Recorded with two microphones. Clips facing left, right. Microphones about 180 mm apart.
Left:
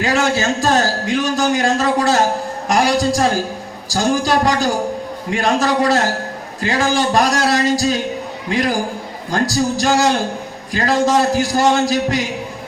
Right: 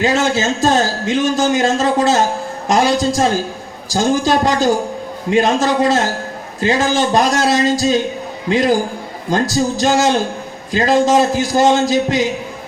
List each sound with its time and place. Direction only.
0.0 s a man's voice: 20° right (ahead or behind)